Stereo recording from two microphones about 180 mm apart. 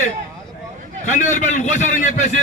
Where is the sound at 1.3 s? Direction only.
45° left (ahead or behind).